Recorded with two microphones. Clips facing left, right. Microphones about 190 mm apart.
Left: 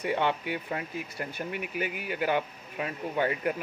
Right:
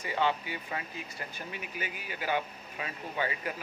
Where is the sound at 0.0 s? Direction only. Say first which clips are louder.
Left 3 dB; 60° left (ahead or behind).